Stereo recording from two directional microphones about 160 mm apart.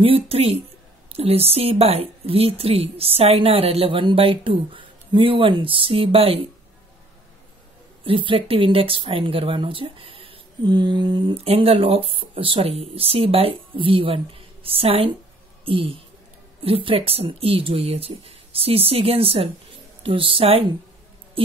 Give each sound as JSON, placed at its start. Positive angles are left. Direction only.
{"t": 0.0, "sound": "speech", "side_deg": -35}
{"t": 8.0, "sound": "speech", "side_deg": -35}